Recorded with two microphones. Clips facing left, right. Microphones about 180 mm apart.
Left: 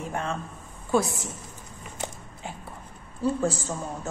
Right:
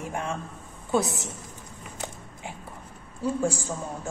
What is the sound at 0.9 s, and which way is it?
Speech, 20° right (ahead or behind).